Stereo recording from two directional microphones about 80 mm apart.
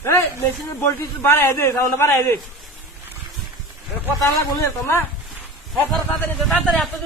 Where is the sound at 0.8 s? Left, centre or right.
Left.